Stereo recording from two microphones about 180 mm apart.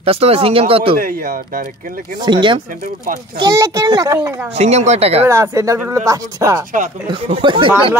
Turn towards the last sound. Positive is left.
turn(degrees=-30)  # may be behind; listen again after turning